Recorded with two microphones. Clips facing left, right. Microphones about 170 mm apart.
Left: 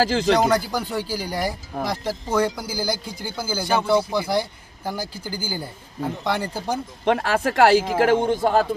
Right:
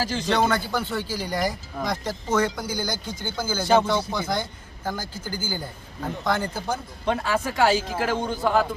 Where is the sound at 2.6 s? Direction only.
30° left (ahead or behind).